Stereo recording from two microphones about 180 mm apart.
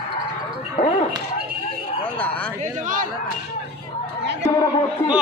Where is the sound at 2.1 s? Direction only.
10° left (ahead or behind).